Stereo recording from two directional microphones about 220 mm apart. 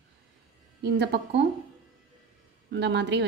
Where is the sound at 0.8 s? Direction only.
55° right (ahead or behind).